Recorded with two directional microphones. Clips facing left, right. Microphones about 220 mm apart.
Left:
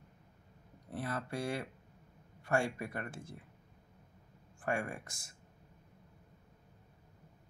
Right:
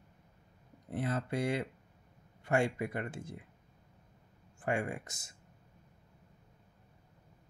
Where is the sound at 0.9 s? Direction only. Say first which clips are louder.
Right 4 dB; 20° right (ahead or behind).